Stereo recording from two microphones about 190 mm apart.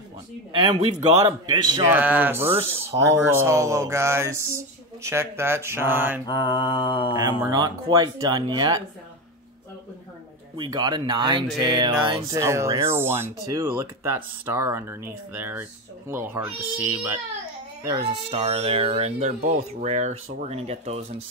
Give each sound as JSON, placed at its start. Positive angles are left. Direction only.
{"t": 0.5, "sound": "speech", "side_deg": -25}
{"t": 1.9, "sound": "speech", "side_deg": -10}
{"t": 6.2, "sound": "mantra", "side_deg": 20}
{"t": 7.2, "sound": "speech", "side_deg": -20}
{"t": 10.6, "sound": "speech", "side_deg": -20}
{"t": 12.4, "sound": "speech", "side_deg": -15}
{"t": 17.8, "sound": "speech", "side_deg": -25}